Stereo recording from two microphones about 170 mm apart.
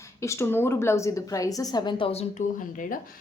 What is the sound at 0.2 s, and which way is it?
A woman's voice, 15° left (ahead or behind).